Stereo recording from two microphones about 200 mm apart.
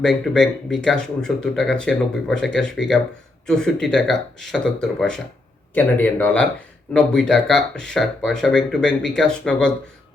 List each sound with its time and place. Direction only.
0.0 s speech: centre (ahead or behind)